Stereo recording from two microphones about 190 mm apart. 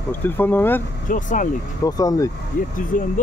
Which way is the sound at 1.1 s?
45° left (ahead or behind).